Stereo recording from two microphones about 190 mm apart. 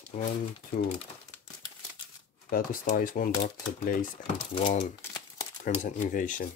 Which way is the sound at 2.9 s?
50° left (ahead or behind).